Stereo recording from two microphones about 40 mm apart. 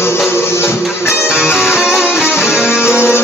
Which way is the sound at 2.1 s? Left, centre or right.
Left.